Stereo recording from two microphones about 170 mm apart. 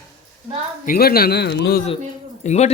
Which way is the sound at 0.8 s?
65° left (ahead or behind).